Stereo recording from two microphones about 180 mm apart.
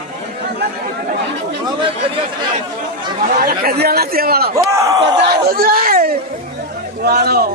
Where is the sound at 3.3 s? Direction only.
55° right (ahead or behind).